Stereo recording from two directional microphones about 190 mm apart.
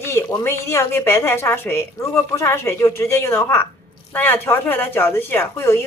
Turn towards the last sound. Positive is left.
turn(degrees=15)  # may be behind; listen again after turning